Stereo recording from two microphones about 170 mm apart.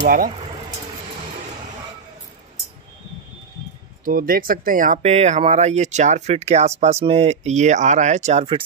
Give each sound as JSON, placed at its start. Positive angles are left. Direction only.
{"t": 0.0, "sound": "speech", "side_deg": -60}
{"t": 4.0, "sound": "speech", "side_deg": -55}